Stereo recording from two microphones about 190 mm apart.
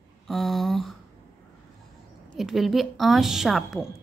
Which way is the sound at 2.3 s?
Centre (ahead or behind).